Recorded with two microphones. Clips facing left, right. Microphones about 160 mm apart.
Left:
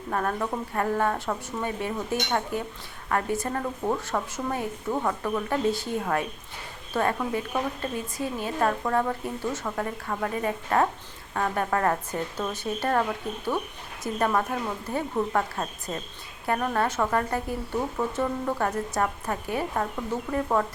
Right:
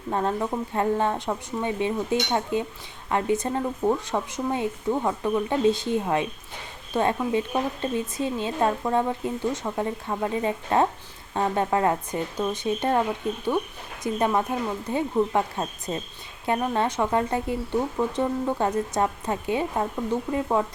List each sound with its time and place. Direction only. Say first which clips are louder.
0.1 s a woman's voice: right 2 dB; 20° right (ahead or behind)